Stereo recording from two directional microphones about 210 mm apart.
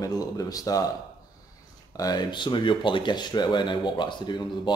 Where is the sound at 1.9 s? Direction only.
20° left (ahead or behind).